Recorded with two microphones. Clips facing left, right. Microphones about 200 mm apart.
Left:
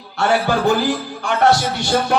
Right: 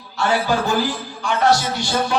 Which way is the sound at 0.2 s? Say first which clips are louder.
Left 2 dB; 60° left (ahead or behind).